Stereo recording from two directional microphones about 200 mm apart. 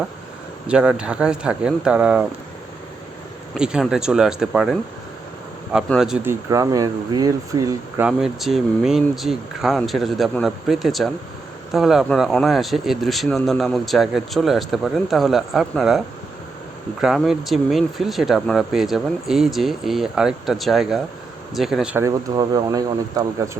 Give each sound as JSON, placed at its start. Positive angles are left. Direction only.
{"t": 0.7, "sound": "speech", "side_deg": -5}
{"t": 3.6, "sound": "speech", "side_deg": -5}
{"t": 6.5, "sound": "speech", "side_deg": -15}
{"t": 8.0, "sound": "speech", "side_deg": 0}
{"t": 17.0, "sound": "speech", "side_deg": 0}